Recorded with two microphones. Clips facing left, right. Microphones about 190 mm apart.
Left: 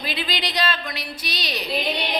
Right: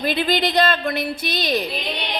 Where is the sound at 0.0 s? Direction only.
50° right (ahead or behind).